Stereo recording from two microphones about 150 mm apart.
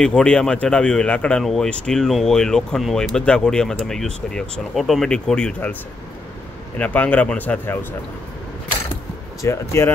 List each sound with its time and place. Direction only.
0.0 s speech: 5° left (ahead or behind)
6.8 s speech: 10° left (ahead or behind)
9.4 s speech: 20° left (ahead or behind)